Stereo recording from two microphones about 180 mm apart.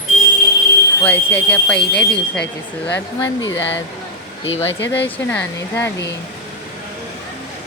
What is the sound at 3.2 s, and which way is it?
Speech, 90° left.